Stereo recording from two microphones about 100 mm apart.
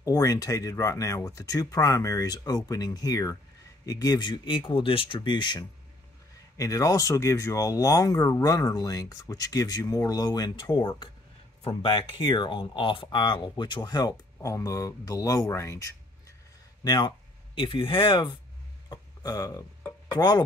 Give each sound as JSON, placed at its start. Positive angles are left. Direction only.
{"t": 0.0, "sound": "speech", "side_deg": 35}
{"t": 6.5, "sound": "speech", "side_deg": 35}
{"t": 12.2, "sound": "speech", "side_deg": 55}
{"t": 16.8, "sound": "speech", "side_deg": 45}
{"t": 17.6, "sound": "speech", "side_deg": 60}
{"t": 18.9, "sound": "a sound", "side_deg": 40}
{"t": 20.1, "sound": "speech", "side_deg": 45}